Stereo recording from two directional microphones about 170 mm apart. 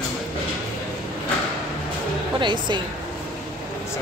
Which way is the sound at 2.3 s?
30° right (ahead or behind).